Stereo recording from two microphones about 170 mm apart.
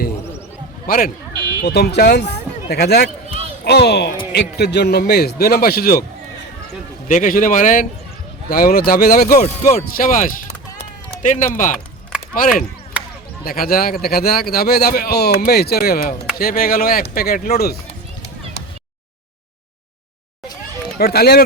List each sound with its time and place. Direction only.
0.9 s a man's voice: 55° left (ahead or behind)
1.6 s a man's voice: 75° left (ahead or behind)
7.1 s speech: 50° left (ahead or behind)
8.4 s a man's voice: 60° left (ahead or behind)
9.3 s a man's voice: 40° left (ahead or behind); by 17.7 s 65° left (ahead or behind)
21.0 s a man's voice: 65° left (ahead or behind)